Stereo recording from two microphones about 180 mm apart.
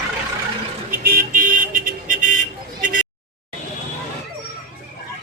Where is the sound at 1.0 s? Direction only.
55° right (ahead or behind).